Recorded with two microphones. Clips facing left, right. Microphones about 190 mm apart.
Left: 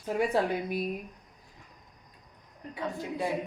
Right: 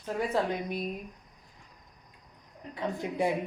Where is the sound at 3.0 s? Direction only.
20° right (ahead or behind).